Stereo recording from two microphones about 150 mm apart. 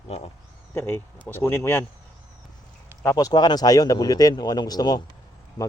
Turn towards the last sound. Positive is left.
turn(degrees=25)  # may be behind; listen again after turning